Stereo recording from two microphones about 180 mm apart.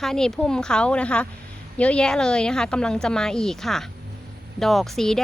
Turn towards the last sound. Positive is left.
turn(degrees=0)  # may be behind; listen again after turning